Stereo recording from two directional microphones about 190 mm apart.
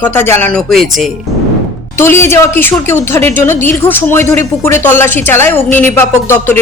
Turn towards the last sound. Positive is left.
turn(degrees=10)  # may be behind; listen again after turning